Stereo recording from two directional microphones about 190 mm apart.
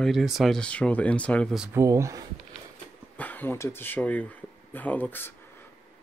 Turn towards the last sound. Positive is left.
turn(degrees=10)  # may be behind; listen again after turning